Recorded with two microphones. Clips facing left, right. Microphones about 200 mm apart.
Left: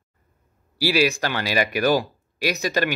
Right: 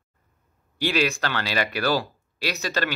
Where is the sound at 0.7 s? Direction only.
10° left (ahead or behind).